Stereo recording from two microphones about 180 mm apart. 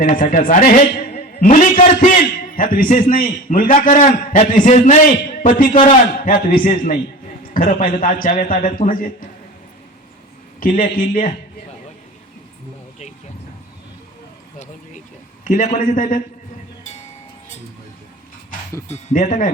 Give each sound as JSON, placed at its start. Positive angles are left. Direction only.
{"t": 0.0, "sound": "a man's voice", "side_deg": 50}
{"t": 10.6, "sound": "a man's voice", "side_deg": 50}
{"t": 15.4, "sound": "a man's voice", "side_deg": 45}
{"t": 18.9, "sound": "a man's voice", "side_deg": 40}